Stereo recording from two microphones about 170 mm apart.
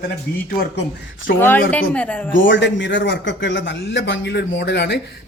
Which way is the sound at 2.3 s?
90° left.